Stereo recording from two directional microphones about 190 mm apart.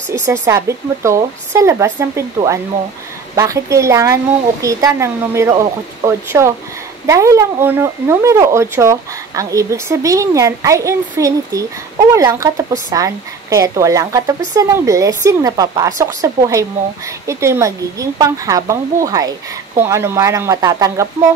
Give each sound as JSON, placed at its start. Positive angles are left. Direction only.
{"t": 0.2, "sound": "speech", "side_deg": -15}